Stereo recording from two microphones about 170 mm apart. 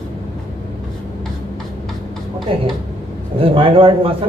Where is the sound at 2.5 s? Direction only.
30° right (ahead or behind).